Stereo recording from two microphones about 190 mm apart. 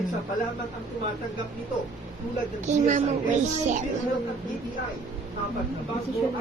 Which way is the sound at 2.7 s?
40° right (ahead or behind).